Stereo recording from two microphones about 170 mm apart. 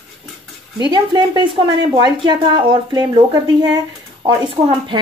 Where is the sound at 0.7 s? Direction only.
25° right (ahead or behind).